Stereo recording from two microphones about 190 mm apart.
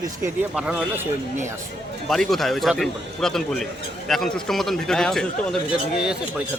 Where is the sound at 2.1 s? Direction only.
Centre (ahead or behind).